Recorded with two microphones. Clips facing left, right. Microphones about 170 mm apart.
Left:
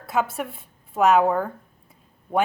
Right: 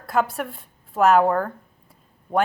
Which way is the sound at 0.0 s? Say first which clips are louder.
Right 2 dB; centre (ahead or behind).